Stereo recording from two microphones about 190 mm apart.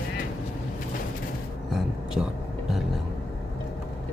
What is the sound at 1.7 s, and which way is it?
Music, centre (ahead or behind).